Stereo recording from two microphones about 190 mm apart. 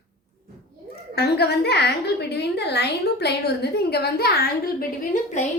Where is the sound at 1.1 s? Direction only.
60° left (ahead or behind).